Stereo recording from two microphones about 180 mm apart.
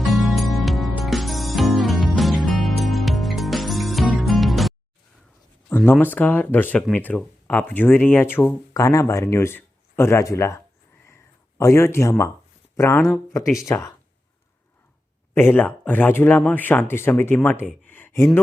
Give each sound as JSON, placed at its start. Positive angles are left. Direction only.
{"t": 0.0, "sound": "music", "side_deg": 0}
{"t": 5.6, "sound": "a sound", "side_deg": 10}
{"t": 6.0, "sound": "speech", "side_deg": 10}
{"t": 11.1, "sound": "a sound", "side_deg": 15}
{"t": 12.7, "sound": "speech", "side_deg": 15}
{"t": 15.4, "sound": "speech", "side_deg": 10}